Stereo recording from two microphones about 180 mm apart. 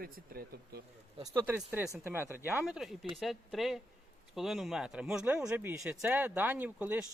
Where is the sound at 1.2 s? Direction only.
10° right (ahead or behind).